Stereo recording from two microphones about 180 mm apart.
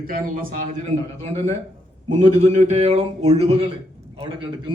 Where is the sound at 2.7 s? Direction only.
35° right (ahead or behind).